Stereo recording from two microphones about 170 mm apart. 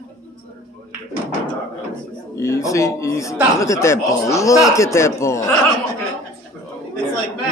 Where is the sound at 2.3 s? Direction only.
20° left (ahead or behind).